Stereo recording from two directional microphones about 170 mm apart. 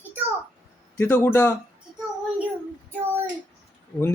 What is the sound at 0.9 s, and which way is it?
Speech, 15° left (ahead or behind).